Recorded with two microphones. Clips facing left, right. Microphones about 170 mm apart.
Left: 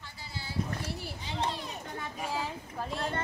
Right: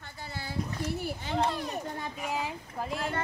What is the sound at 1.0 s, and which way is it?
Children playing, 55° right (ahead or behind).